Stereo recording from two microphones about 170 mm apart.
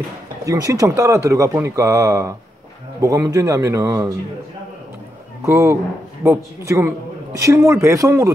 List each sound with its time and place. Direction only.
0.5 s speech: 20° right (ahead or behind)
5.4 s speech: 15° right (ahead or behind)